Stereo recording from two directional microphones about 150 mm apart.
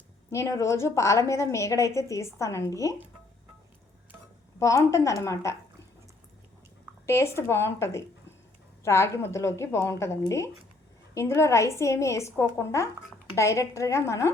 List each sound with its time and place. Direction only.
0.3 s a woman's voice: 20° left (ahead or behind)
4.6 s a woman's voice: 20° left (ahead or behind)
7.0 s a woman's voice: 15° left (ahead or behind)